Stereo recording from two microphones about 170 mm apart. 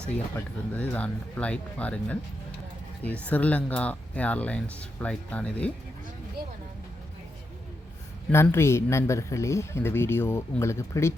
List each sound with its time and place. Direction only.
0.3 s speech: 10° left (ahead or behind)
8.3 s speech: 15° left (ahead or behind)